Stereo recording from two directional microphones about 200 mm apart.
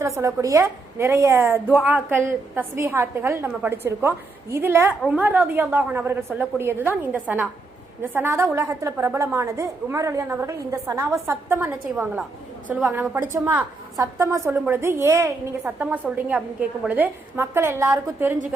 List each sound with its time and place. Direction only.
0.0 s a woman's voice: 15° right (ahead or behind)